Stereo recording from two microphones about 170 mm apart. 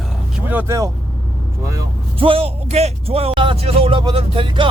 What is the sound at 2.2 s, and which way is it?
A man's voice, 35° right (ahead or behind).